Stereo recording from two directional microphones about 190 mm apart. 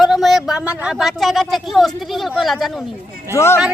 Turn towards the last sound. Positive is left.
turn(degrees=15)  # may be behind; listen again after turning